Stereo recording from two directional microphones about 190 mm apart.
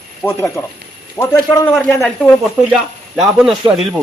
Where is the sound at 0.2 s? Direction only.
5° left (ahead or behind).